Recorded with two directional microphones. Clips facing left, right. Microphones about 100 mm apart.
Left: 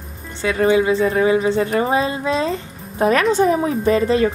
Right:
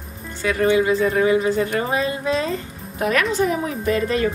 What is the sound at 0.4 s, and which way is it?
A woman's voice, 30° left (ahead or behind).